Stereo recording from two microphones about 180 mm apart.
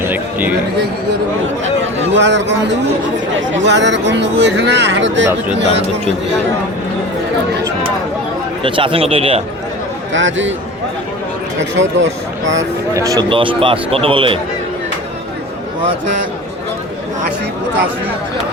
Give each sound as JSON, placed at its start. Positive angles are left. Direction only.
{"t": 0.0, "sound": "a sound", "side_deg": -10}
{"t": 2.0, "sound": "speech", "side_deg": -80}
{"t": 8.6, "sound": "speech", "side_deg": -30}
{"t": 10.1, "sound": "speech", "side_deg": -90}
{"t": 11.8, "sound": "speech", "side_deg": -90}
{"t": 12.9, "sound": "speech", "side_deg": -20}